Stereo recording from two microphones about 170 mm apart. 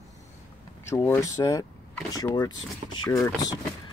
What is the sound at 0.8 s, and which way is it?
Speech, 15° left (ahead or behind).